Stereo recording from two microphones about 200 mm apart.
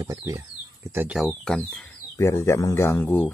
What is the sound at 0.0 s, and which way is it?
Speech, 15° right (ahead or behind).